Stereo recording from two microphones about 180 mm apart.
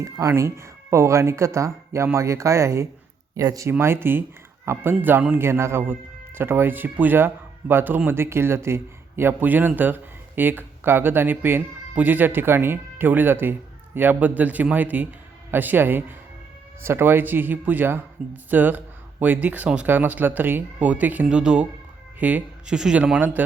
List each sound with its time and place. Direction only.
0.0 s a man's voice: 15° right (ahead or behind)